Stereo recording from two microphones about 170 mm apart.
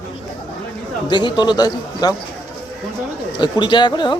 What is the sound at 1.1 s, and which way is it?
Speech, 25° left (ahead or behind).